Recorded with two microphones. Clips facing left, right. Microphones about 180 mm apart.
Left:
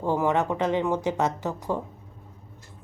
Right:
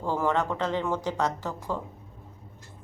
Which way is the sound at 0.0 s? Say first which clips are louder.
Left 3 dB; 20° left (ahead or behind).